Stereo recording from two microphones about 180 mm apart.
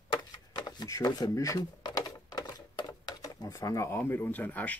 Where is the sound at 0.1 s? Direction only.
25° left (ahead or behind).